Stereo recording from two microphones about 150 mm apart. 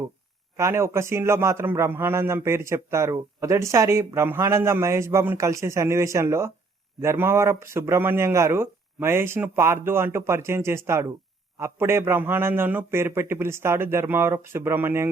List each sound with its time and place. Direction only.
0.5 s a man's voice: 20° right (ahead or behind)